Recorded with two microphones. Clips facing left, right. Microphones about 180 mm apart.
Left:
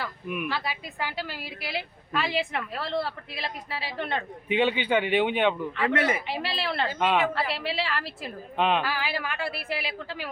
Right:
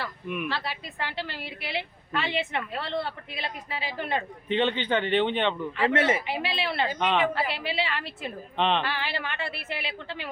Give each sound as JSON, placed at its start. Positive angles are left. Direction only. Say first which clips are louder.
{"t": 0.0, "sound": "a woman's voice", "louder": "even", "side_deg": 0}
{"t": 4.4, "sound": "a man's voice", "louder": "left 2 dB", "side_deg": 10}
{"t": 5.8, "sound": "speech", "louder": "right 2 dB", "side_deg": -25}
{"t": 6.2, "sound": "a woman's voice", "louder": "right 1 dB", "side_deg": 0}